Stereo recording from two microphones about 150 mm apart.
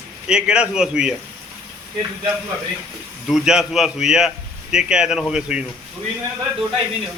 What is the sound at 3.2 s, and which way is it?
A man's voice, 5° right (ahead or behind).